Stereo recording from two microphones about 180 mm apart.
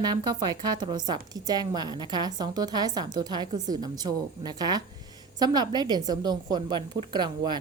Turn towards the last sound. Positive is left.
turn(degrees=-25)  # may be behind; listen again after turning